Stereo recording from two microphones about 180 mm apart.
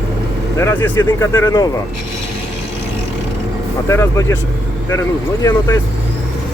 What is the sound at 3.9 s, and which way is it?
Speech, 15° left (ahead or behind).